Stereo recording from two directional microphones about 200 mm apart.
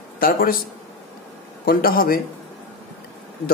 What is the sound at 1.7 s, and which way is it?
Speech, 45° left (ahead or behind).